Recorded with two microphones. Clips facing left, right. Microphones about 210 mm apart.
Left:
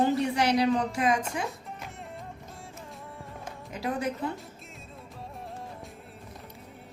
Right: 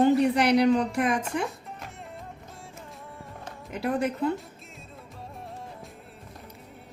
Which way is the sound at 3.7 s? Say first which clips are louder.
Right 4 dB; 60° right (ahead or behind).